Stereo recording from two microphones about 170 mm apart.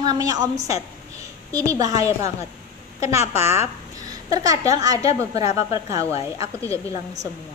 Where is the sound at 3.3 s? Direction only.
15° right (ahead or behind).